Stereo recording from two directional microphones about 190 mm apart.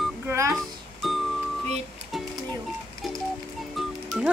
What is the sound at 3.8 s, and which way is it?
Music, 5° right (ahead or behind).